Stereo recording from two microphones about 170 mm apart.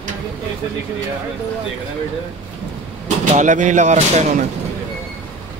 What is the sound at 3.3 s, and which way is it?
Speech, 45° right (ahead or behind).